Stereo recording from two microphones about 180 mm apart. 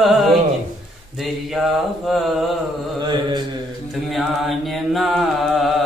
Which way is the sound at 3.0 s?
25° right (ahead or behind).